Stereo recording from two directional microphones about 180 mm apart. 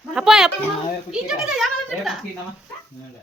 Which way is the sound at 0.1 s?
5° right (ahead or behind).